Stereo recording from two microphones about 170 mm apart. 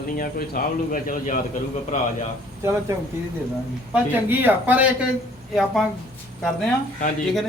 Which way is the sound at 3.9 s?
10° right (ahead or behind).